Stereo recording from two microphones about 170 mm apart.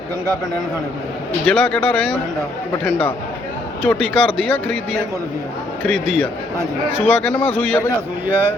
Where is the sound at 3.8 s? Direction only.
5° left (ahead or behind).